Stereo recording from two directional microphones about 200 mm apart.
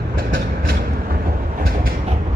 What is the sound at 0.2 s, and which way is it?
Train, 45° right (ahead or behind).